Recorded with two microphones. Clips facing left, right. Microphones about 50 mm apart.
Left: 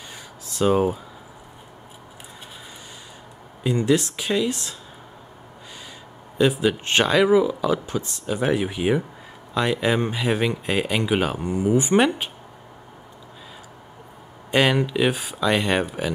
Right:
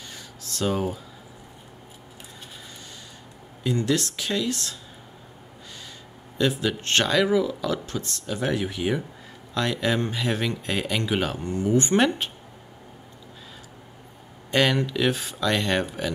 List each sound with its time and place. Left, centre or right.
0.1 s caw: centre
3.6 s speech: centre
6.3 s speech: centre
14.5 s speech: centre